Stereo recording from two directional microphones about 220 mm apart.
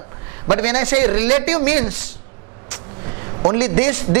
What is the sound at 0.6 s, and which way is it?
A man's voice, 15° right (ahead or behind).